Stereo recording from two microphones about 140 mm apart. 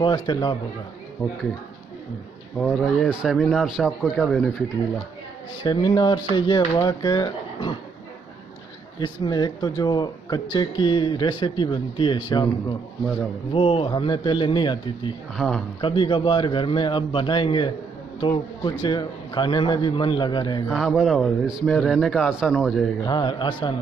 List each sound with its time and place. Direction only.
0.0 s speech: 35° left (ahead or behind)
2.6 s speech: centre (ahead or behind)
5.6 s speech: 30° left (ahead or behind)
9.0 s speech: 30° left (ahead or behind)
13.5 s speech: 40° left (ahead or behind)
15.3 s speech: centre (ahead or behind)
15.8 s speech: 35° left (ahead or behind)
20.7 s speech: centre (ahead or behind)
23.0 s speech: 30° left (ahead or behind)